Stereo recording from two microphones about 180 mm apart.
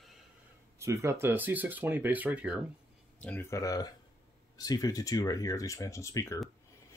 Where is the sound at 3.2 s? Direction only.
15° left (ahead or behind).